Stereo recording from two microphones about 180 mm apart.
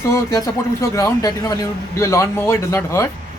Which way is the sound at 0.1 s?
20° left (ahead or behind).